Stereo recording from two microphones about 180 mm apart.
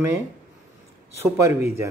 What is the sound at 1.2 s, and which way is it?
Speech, 15° right (ahead or behind).